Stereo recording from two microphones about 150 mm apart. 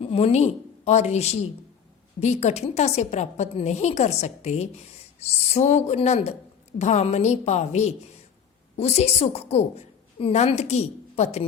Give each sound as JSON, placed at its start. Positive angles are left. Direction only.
{"t": 0.0, "sound": "a woman's voice", "side_deg": 40}